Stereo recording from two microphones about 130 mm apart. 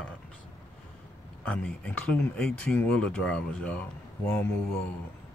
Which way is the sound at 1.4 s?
10° left (ahead or behind).